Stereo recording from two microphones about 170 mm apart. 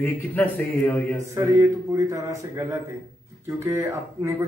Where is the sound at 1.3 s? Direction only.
15° right (ahead or behind).